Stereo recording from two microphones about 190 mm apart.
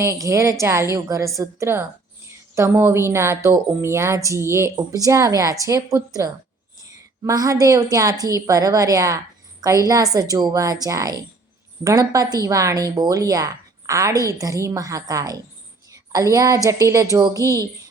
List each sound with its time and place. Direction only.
0.0 s speech: 15° right (ahead or behind)
15.9 s a sound: 15° right (ahead or behind)
16.6 s speech: 15° right (ahead or behind)